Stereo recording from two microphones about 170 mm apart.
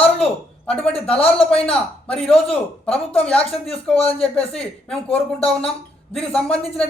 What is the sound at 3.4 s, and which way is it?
Speech, 35° left (ahead or behind).